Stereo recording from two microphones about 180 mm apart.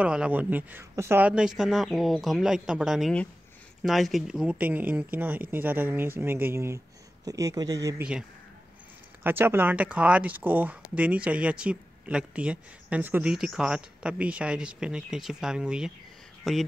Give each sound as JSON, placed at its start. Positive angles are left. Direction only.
{"t": 0.0, "sound": "a man's voice", "side_deg": -5}
{"t": 8.0, "sound": "a man's voice", "side_deg": -5}